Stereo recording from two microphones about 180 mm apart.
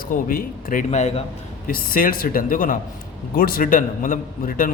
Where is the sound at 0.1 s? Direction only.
50° left (ahead or behind).